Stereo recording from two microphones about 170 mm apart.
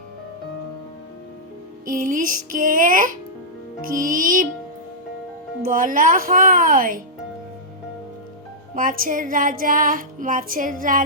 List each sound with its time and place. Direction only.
1.9 s music: 50° right (ahead or behind)
5.6 s music: 55° right (ahead or behind)
8.7 s music: 55° right (ahead or behind)